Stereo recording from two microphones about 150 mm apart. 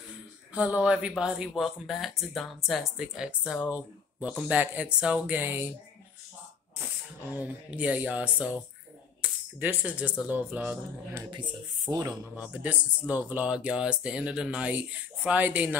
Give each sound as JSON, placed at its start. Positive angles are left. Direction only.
{"t": 0.6, "sound": "speech", "side_deg": -10}
{"t": 7.2, "sound": "speech", "side_deg": -10}
{"t": 11.2, "sound": "speech", "side_deg": -30}
{"t": 12.4, "sound": "speech", "side_deg": -10}